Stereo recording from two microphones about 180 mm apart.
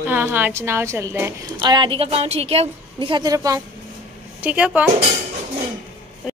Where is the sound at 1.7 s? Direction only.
30° right (ahead or behind).